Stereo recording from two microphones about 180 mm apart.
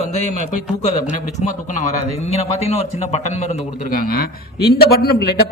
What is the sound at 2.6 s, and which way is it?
Speech, 35° left (ahead or behind).